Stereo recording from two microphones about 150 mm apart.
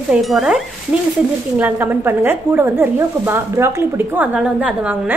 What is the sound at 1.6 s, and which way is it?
Speech, 15° right (ahead or behind).